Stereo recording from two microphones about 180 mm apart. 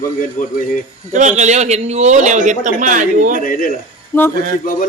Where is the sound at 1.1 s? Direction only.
40° right (ahead or behind).